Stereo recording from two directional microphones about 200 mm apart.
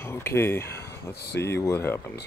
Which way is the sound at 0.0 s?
10° left (ahead or behind).